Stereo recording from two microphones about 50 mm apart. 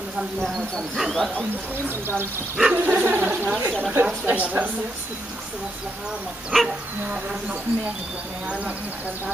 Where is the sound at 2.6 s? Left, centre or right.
Centre.